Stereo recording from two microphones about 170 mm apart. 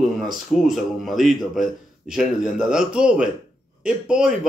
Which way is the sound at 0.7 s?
Centre (ahead or behind).